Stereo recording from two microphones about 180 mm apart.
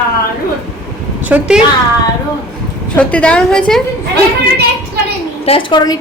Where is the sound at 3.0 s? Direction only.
5° left (ahead or behind).